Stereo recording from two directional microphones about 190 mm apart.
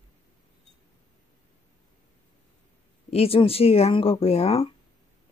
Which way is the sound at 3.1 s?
30° left (ahead or behind).